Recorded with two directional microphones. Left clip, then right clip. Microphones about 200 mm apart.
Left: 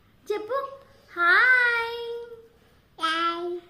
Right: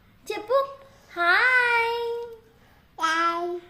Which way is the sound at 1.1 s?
20° right (ahead or behind).